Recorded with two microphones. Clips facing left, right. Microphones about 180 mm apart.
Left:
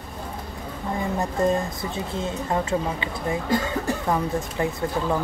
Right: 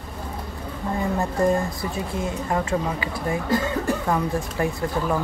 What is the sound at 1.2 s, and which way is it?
A woman's voice, 20° left (ahead or behind).